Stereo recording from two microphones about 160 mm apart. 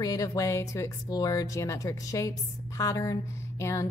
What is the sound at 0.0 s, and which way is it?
A woman's voice, 20° left (ahead or behind).